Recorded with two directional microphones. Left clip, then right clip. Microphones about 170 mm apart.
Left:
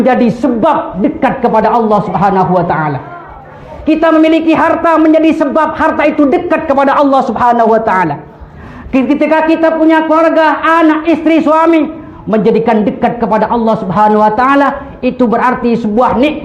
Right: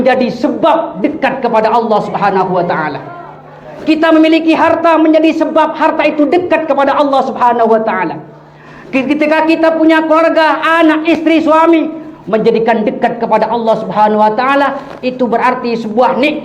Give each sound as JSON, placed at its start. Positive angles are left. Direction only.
{"t": 0.0, "sound": "a man's voice", "side_deg": 40}
{"t": 8.9, "sound": "a man's voice", "side_deg": 35}